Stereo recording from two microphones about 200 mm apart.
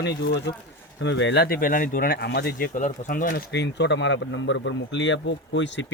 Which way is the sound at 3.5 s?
60° left (ahead or behind).